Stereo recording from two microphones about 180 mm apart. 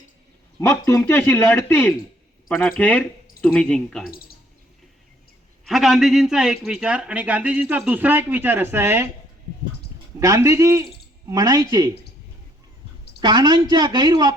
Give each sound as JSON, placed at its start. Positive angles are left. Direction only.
{"t": 0.6, "sound": "speech", "side_deg": 15}
{"t": 4.1, "sound": "speech", "side_deg": 55}
{"t": 5.6, "sound": "a man's voice", "side_deg": 0}
{"t": 10.2, "sound": "a man's voice", "side_deg": -15}
{"t": 13.1, "sound": "a woman's voice", "side_deg": -25}